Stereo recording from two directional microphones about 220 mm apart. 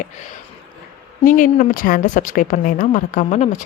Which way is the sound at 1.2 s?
35° left (ahead or behind).